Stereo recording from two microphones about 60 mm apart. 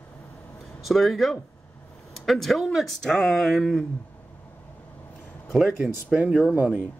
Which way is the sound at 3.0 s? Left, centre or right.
Centre.